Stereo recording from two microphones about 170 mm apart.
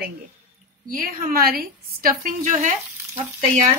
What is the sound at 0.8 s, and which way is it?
A woman's voice, 55° right (ahead or behind).